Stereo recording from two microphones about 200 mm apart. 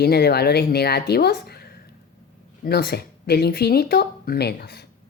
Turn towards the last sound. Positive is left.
turn(degrees=55)  # may be behind; listen again after turning